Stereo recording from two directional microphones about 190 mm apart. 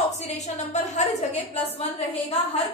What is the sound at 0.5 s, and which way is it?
A woman's voice, 40° left (ahead or behind).